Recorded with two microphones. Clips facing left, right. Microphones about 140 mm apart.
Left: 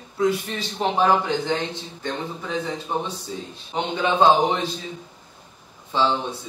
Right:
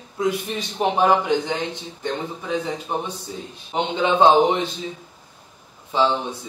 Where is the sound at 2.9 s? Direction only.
15° right (ahead or behind).